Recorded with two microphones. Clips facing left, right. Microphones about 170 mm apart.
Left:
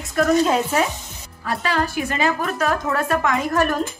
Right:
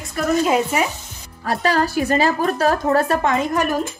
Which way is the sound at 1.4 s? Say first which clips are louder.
Right 4 dB; 40° right (ahead or behind).